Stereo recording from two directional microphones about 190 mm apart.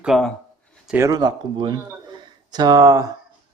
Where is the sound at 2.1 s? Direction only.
20° right (ahead or behind).